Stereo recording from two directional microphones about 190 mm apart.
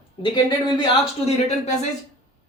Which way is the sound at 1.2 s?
35° left (ahead or behind).